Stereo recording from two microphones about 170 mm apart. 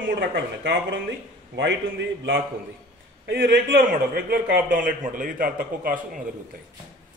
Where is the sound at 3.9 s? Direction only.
60° right (ahead or behind).